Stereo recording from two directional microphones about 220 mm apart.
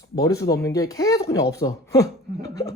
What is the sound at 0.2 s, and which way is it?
Speech, 15° left (ahead or behind).